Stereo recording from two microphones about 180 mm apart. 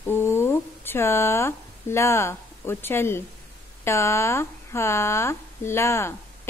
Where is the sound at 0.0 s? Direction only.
15° left (ahead or behind).